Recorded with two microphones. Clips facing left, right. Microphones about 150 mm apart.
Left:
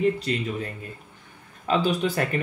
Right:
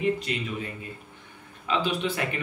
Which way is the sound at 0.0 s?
40° left (ahead or behind).